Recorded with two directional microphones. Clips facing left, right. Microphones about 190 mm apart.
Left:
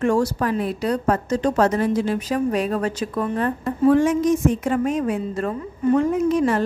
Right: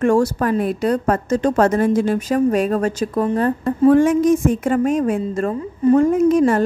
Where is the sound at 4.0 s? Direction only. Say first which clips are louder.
Right 4 dB; 50° right (ahead or behind).